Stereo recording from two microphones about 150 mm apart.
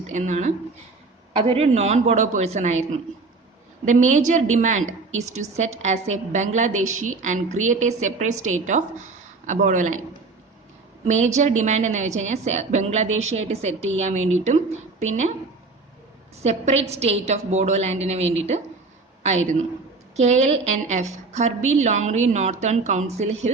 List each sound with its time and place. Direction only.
0.1 s a woman's voice: 50° right (ahead or behind)
3.8 s a woman's voice: 55° right (ahead or behind)
11.0 s a woman's voice: 50° right (ahead or behind)
16.4 s a woman's voice: 45° right (ahead or behind)